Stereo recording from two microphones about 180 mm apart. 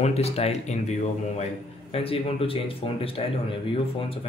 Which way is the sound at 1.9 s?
30° left (ahead or behind).